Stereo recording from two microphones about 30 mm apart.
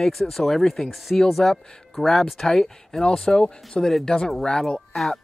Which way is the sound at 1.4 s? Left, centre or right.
Centre.